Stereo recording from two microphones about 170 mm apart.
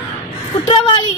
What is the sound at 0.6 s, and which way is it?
Speech, 30° left (ahead or behind).